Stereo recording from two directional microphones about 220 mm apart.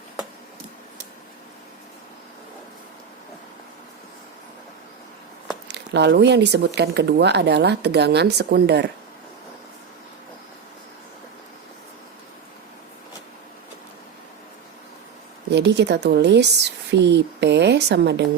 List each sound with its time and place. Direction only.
5.6 s speech: 50° right (ahead or behind)
15.4 s speech: 50° right (ahead or behind)